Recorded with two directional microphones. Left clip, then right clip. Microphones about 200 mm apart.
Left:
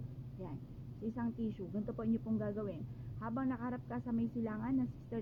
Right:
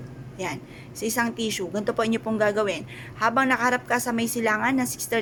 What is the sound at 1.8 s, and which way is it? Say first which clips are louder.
A woman's voice: right 16 dB; 15° right (ahead or behind).